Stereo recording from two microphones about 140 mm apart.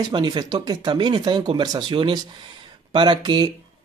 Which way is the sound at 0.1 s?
30° right (ahead or behind).